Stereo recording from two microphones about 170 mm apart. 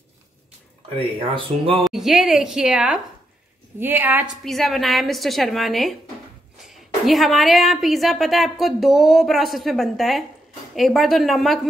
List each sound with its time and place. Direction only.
0.9 s speech: 30° right (ahead or behind)
1.9 s a woman's voice: centre (ahead or behind)
4.5 s a woman's voice: centre (ahead or behind)